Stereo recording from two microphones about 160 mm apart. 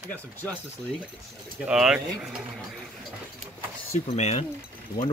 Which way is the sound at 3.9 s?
40° left (ahead or behind).